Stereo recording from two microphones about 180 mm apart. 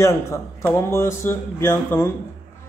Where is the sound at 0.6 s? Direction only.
15° left (ahead or behind).